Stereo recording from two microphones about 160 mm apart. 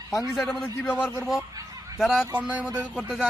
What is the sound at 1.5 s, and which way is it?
Fowl, 20° right (ahead or behind).